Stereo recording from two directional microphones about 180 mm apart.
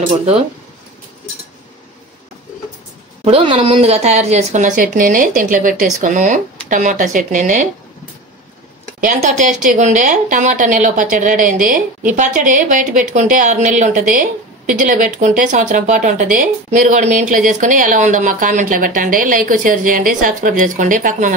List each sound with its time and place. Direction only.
3.3 s a woman's voice: 30° right (ahead or behind)
9.0 s speech: 45° right (ahead or behind)